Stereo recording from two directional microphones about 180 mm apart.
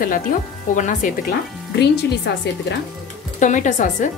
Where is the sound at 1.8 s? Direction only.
70° left (ahead or behind).